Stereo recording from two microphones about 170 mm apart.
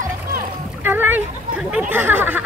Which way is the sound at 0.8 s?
10° right (ahead or behind).